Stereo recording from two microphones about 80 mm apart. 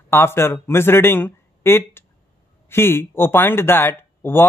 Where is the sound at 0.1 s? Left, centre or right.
Left.